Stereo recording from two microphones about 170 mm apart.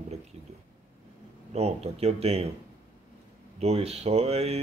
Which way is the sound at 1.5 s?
40° right (ahead or behind).